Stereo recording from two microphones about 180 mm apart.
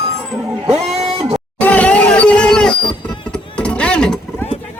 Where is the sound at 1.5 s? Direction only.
10° left (ahead or behind).